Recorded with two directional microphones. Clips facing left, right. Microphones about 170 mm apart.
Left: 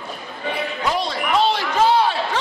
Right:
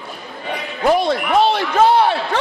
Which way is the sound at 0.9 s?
55° right (ahead or behind).